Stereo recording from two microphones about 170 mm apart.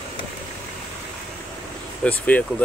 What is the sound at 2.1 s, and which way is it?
Speech, 10° left (ahead or behind).